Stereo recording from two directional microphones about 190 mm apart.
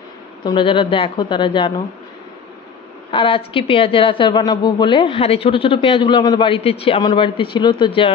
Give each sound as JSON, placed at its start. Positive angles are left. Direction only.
{"t": 0.5, "sound": "speech", "side_deg": 25}
{"t": 3.1, "sound": "speech", "side_deg": 25}